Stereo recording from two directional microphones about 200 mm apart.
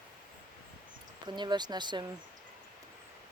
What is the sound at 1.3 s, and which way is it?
Speech, 20° right (ahead or behind).